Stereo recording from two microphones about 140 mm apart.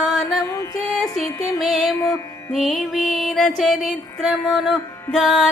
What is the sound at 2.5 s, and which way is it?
Music, centre (ahead or behind).